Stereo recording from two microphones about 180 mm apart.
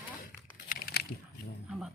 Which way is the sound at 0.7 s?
55° left (ahead or behind).